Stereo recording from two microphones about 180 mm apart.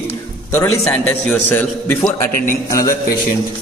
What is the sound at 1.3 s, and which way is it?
A man's voice, 10° left (ahead or behind).